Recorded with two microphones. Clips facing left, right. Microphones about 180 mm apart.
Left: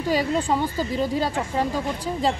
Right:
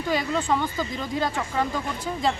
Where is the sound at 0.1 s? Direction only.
35° left (ahead or behind).